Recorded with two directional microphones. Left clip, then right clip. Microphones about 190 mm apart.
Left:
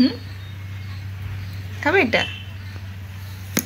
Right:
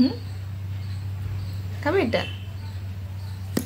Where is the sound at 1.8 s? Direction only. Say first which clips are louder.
Left 5 dB; 15° left (ahead or behind).